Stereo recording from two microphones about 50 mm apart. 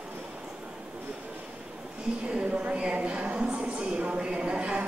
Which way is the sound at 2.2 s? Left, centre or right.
Right.